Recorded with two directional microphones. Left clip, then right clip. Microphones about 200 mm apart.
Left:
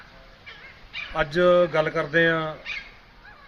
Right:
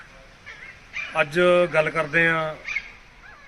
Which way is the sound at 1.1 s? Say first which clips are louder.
Right 1 dB; 10° left (ahead or behind).